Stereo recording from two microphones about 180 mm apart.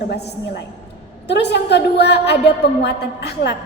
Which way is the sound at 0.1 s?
70° left (ahead or behind).